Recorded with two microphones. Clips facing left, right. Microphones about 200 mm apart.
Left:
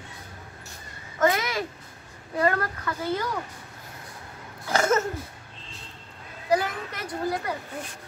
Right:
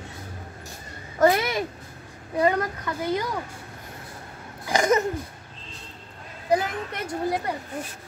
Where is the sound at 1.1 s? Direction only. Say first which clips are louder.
Right 4 dB; 35° right (ahead or behind).